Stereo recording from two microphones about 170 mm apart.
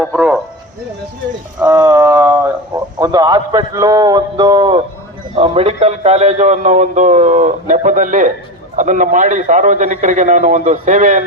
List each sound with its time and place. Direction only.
0.0 s speech: 5° right (ahead or behind)
1.6 s a man's voice: 20° right (ahead or behind); by 11.2 s 45° right (ahead or behind)